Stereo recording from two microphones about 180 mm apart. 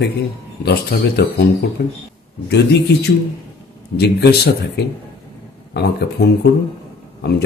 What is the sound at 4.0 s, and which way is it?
Speech, 65° left (ahead or behind).